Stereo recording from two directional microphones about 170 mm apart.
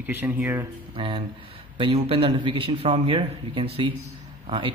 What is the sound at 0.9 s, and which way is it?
Speech, 30° right (ahead or behind).